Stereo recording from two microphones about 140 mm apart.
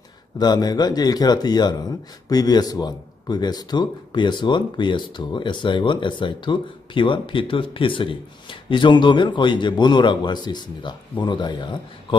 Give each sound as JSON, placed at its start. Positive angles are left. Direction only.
{"t": 0.4, "sound": "a man's voice", "side_deg": 30}